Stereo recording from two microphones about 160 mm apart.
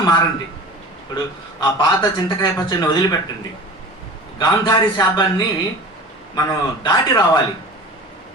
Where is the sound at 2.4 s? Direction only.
25° left (ahead or behind).